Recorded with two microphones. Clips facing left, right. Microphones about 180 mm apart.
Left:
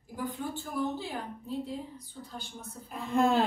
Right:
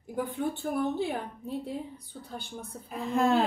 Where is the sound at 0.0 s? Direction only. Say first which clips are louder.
Right 5 dB; 60° right (ahead or behind).